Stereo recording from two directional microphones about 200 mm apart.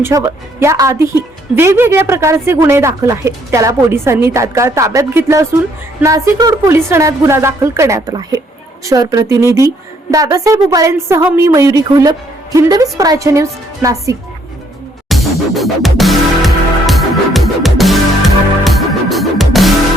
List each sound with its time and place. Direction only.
0.0 s a woman's voice: 15° right (ahead or behind)
15.1 s music: centre (ahead or behind)